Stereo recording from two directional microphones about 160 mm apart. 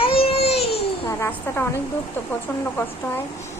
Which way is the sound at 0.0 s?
35° left (ahead or behind).